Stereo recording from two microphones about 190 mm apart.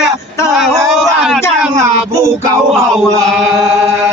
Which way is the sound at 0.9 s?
Centre (ahead or behind).